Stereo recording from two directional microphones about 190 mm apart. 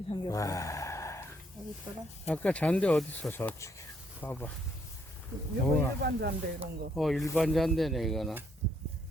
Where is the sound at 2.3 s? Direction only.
5° left (ahead or behind).